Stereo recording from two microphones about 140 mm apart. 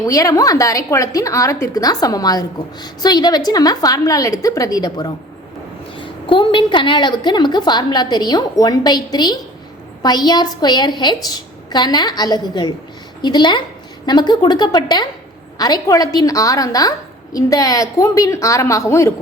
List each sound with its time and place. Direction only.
0.0 s a woman's voice: 25° left (ahead or behind)